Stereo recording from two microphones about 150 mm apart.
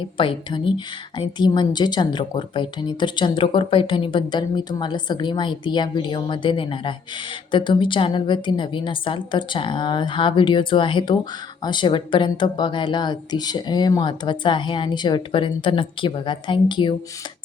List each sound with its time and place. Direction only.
0.2 s speech: 35° left (ahead or behind)